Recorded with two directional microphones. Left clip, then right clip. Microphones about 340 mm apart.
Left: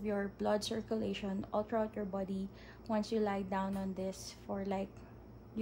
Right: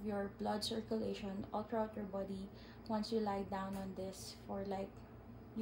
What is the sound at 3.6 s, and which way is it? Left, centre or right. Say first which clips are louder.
Speech: left 5 dB; left.